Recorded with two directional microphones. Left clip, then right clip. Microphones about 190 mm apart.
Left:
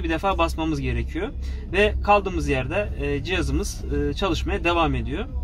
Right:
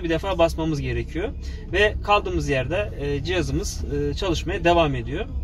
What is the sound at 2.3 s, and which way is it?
Speech, 50° left (ahead or behind).